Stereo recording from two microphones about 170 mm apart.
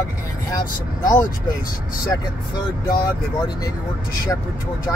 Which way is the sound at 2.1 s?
15° left (ahead or behind).